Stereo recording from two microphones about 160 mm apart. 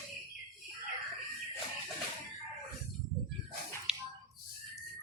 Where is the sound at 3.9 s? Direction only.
5° right (ahead or behind).